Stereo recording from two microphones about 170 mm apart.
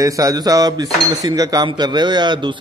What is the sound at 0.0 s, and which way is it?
Speech, 20° right (ahead or behind).